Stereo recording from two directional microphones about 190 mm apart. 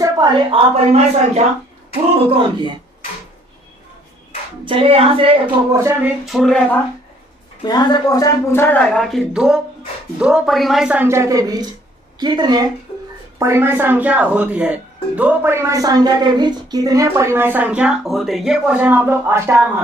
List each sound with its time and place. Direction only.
0.0 s speech: 25° right (ahead or behind)
4.6 s speech: 30° right (ahead or behind)
5.7 s speech: 15° right (ahead or behind)
6.2 s a woman's voice: centre (ahead or behind)
7.6 s a woman's voice: 20° left (ahead or behind); by 19.6 s 15° right (ahead or behind)